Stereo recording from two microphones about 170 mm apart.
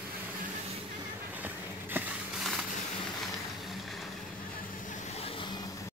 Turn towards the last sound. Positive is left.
turn(degrees=30)  # may be behind; listen again after turning